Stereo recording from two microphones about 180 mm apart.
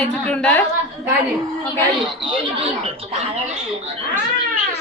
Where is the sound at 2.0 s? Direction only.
25° right (ahead or behind).